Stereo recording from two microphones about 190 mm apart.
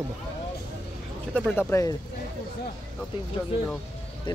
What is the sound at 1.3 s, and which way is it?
Speech, 10° left (ahead or behind).